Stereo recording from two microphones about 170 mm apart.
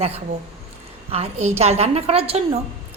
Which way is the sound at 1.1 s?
40° right (ahead or behind).